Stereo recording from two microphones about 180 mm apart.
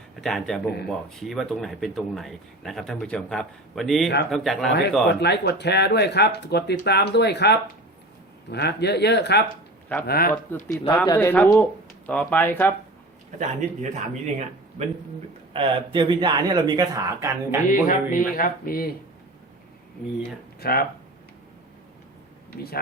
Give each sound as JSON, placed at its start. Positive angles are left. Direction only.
{"t": 0.2, "sound": "speech", "side_deg": 5}
{"t": 5.2, "sound": "speech", "side_deg": 65}
{"t": 10.1, "sound": "speech", "side_deg": 55}
{"t": 10.3, "sound": "speech", "side_deg": 15}
{"t": 13.4, "sound": "a man's voice", "side_deg": -40}
{"t": 15.5, "sound": "speech", "side_deg": -30}
{"t": 17.7, "sound": "speech", "side_deg": 50}
{"t": 20.6, "sound": "speech", "side_deg": 60}